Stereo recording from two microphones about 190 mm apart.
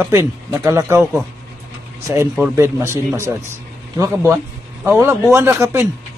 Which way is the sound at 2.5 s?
15° right (ahead or behind).